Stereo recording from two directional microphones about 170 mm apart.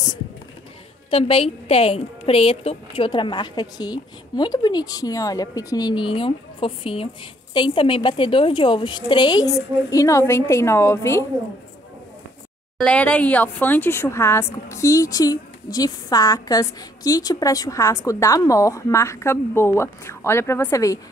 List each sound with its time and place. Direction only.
1.1 s a woman's voice: 35° left (ahead or behind); by 11.2 s 15° left (ahead or behind)
12.7 s speech: 5° left (ahead or behind)